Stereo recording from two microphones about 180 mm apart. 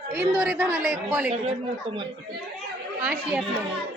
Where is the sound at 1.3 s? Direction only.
35° right (ahead or behind).